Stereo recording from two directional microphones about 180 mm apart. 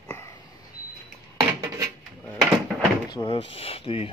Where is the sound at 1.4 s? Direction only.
20° right (ahead or behind).